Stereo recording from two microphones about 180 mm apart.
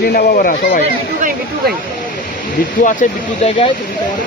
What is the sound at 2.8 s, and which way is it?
Speech, 45° left (ahead or behind).